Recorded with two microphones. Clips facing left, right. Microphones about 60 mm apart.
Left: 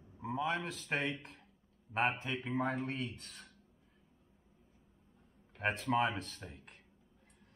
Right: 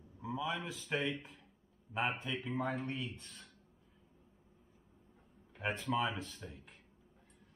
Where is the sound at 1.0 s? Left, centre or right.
Centre.